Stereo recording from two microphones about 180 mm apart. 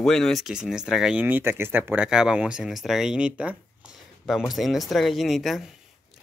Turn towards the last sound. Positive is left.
turn(degrees=0)  # may be behind; listen again after turning